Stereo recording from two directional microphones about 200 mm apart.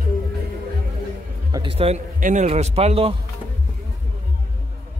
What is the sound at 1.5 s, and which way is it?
A man's voice, 25° right (ahead or behind).